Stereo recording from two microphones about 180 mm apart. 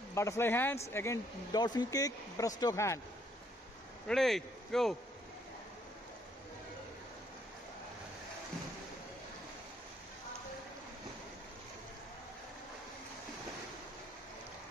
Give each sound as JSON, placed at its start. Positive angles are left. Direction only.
{"t": 0.1, "sound": "speech", "side_deg": 15}
{"t": 4.1, "sound": "speech", "side_deg": 0}